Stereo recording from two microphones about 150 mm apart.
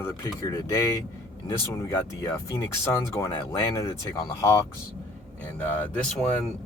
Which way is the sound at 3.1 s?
20° left (ahead or behind).